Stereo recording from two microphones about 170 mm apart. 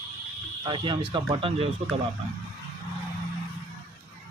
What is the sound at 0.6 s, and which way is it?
Speech, 25° right (ahead or behind).